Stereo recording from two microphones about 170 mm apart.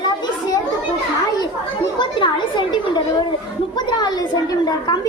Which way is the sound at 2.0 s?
30° left (ahead or behind).